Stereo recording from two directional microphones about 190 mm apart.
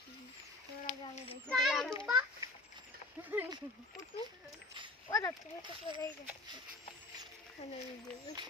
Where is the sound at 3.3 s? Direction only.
10° right (ahead or behind).